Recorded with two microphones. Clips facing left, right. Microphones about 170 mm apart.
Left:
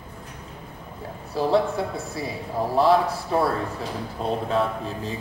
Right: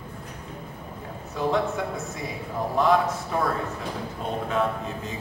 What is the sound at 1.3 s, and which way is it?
Speech, 35° left (ahead or behind).